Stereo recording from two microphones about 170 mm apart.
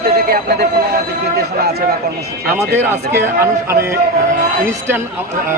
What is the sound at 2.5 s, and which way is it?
A man's voice, 15° right (ahead or behind).